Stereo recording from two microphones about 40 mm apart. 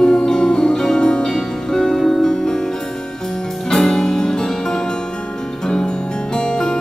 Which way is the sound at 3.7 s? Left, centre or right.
Centre.